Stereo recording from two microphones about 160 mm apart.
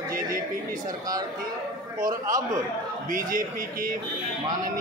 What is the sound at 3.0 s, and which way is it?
Speech, 60° right (ahead or behind).